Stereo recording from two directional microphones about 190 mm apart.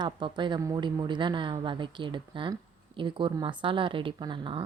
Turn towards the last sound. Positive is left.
turn(degrees=-25)  # may be behind; listen again after turning